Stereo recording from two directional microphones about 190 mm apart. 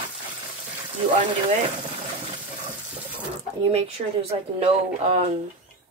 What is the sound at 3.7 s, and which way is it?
Speech, 30° right (ahead or behind).